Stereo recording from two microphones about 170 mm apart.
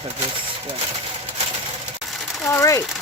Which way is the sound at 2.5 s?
15° left (ahead or behind).